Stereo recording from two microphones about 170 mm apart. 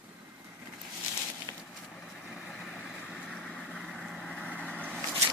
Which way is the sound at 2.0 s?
Centre (ahead or behind).